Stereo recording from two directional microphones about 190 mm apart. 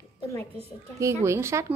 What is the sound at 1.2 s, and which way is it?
Speech, 15° right (ahead or behind).